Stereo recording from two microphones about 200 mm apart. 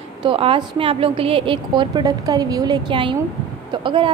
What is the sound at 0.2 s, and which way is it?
A woman's voice, 25° right (ahead or behind).